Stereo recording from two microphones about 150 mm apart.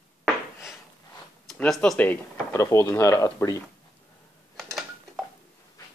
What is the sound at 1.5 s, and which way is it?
Speech, 5° left (ahead or behind).